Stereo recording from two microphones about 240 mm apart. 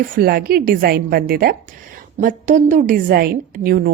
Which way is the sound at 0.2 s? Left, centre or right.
Right.